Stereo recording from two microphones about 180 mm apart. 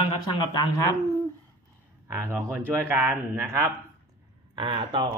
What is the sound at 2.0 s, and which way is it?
Speech, 15° right (ahead or behind).